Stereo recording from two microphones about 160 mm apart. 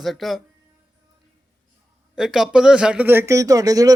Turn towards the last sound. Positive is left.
turn(degrees=-20)  # may be behind; listen again after turning